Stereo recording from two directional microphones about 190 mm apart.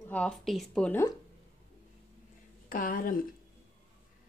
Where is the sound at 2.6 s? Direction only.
45° left (ahead or behind).